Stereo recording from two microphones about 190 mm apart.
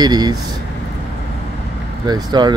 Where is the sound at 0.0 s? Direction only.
20° right (ahead or behind).